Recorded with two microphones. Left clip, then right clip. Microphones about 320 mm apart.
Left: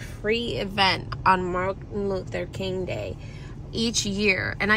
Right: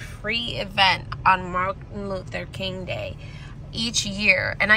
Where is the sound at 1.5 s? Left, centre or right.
Right.